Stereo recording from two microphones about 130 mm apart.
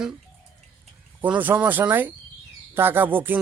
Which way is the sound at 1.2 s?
15° right (ahead or behind).